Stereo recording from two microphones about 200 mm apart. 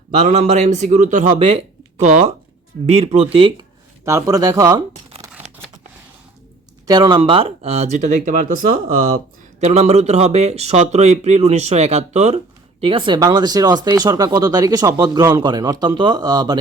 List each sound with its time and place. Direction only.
0.2 s speech: 35° right (ahead or behind)
4.0 s speech: 15° right (ahead or behind)
6.8 s speech: 20° right (ahead or behind)